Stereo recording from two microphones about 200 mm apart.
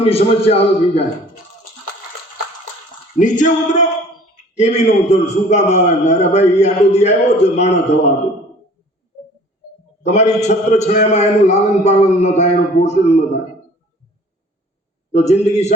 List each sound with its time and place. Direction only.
0.0 s a man's voice: 30° left (ahead or behind)
3.2 s a man's voice: 40° left (ahead or behind)
10.0 s a man's voice: 35° left (ahead or behind)
15.1 s a man's voice: 35° left (ahead or behind)